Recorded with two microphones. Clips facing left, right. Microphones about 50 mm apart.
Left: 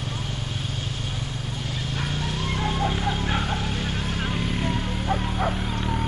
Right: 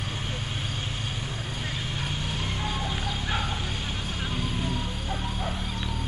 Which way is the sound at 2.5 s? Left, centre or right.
Left.